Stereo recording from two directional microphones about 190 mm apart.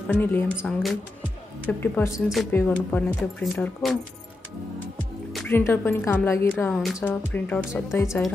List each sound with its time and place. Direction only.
0.1 s a woman's voice: 10° left (ahead or behind)
0.6 s a woman's voice: centre (ahead or behind)
2.1 s speech: 5° right (ahead or behind)
2.5 s a woman's voice: 10° left (ahead or behind)
5.5 s a woman's voice: 10° left (ahead or behind)
6.7 s a woman's voice: centre (ahead or behind)